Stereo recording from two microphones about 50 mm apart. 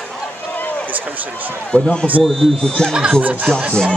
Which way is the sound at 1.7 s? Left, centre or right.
Left.